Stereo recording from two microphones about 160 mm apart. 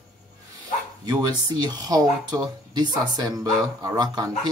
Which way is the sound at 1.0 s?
25° right (ahead or behind).